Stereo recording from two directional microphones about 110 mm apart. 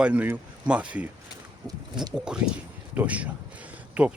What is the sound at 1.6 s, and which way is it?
Speech, 40° right (ahead or behind).